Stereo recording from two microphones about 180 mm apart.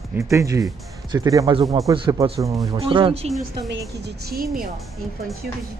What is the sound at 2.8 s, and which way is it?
Speech, 30° right (ahead or behind).